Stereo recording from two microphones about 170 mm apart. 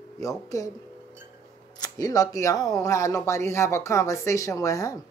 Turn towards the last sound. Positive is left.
turn(degrees=20)  # may be behind; listen again after turning